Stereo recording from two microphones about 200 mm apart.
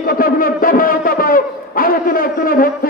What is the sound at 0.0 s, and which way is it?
A man's voice, 45° left (ahead or behind).